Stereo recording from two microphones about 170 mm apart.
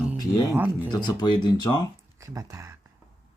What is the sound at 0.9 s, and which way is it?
Speech, 25° left (ahead or behind).